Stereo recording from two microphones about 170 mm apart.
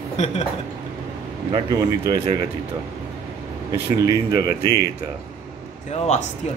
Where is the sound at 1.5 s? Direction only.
25° right (ahead or behind).